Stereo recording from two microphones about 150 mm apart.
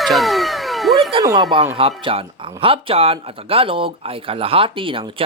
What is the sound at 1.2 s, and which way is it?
Speech, 25° right (ahead or behind).